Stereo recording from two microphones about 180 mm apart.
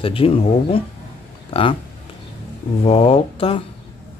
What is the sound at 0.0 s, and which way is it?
Speech, 30° left (ahead or behind).